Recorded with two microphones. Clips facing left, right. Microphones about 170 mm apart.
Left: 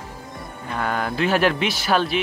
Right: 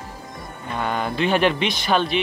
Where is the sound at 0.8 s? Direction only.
Centre (ahead or behind).